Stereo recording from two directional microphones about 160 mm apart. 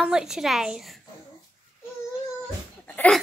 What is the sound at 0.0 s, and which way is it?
Speech, 5° right (ahead or behind).